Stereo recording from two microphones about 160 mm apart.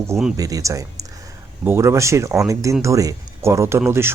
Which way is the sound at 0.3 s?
20° right (ahead or behind).